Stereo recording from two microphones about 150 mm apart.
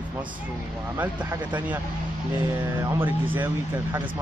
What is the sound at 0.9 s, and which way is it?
Speech, 10° right (ahead or behind).